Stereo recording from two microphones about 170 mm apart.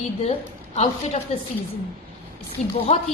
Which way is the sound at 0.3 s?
40° left (ahead or behind).